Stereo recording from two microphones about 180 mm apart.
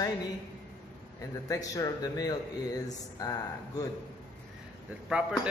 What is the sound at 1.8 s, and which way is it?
Speech, 20° left (ahead or behind).